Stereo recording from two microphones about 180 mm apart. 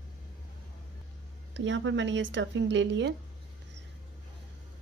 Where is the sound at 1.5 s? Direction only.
90° right.